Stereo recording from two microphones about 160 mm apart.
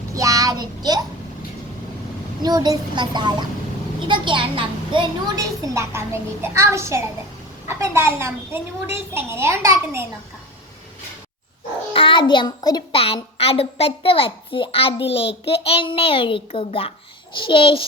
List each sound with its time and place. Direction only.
0.1 s child singing: 20° right (ahead or behind)
2.4 s a child's voice: 25° right (ahead or behind)
11.9 s a child's voice: 30° left (ahead or behind)